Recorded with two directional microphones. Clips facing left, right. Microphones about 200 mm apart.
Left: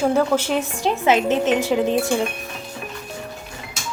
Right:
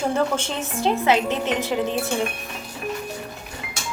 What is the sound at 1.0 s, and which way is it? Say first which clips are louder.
Speech: left 5 dB; 20° left (ahead or behind).